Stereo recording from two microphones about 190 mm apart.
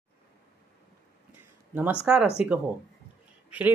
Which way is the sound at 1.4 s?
10° right (ahead or behind).